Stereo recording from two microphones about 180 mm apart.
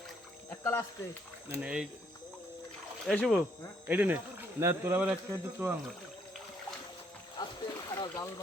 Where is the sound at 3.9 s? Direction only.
10° right (ahead or behind).